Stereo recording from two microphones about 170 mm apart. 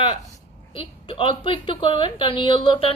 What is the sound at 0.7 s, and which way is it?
A woman's voice, 30° left (ahead or behind).